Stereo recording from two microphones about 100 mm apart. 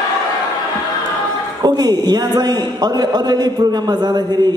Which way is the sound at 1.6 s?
45° right (ahead or behind).